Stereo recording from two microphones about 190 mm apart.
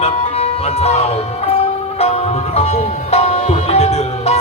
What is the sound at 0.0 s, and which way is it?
Music, 35° left (ahead or behind).